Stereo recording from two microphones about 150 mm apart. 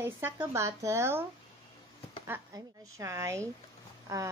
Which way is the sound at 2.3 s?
20° right (ahead or behind).